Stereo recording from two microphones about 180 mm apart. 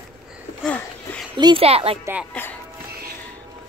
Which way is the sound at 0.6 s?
5° left (ahead or behind).